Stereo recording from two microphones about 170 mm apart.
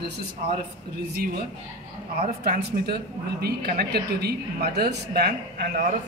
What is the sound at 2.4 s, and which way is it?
A woman's voice, 60° right (ahead or behind).